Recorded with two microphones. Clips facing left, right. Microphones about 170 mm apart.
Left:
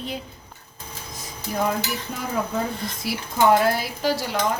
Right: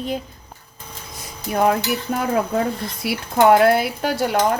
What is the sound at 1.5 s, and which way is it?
Speech, 65° right (ahead or behind).